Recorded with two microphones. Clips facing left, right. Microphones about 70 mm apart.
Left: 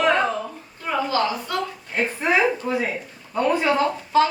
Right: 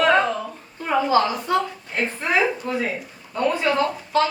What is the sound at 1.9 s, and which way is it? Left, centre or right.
Speech, centre.